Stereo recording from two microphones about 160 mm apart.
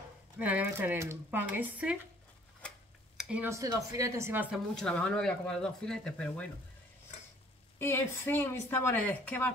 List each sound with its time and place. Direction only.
0.4 s speech: 10° right (ahead or behind)
3.2 s a sound: 5° right (ahead or behind)
3.4 s speech: 20° right (ahead or behind)
4.7 s speech: 5° left (ahead or behind)
7.8 s speech: 15° left (ahead or behind)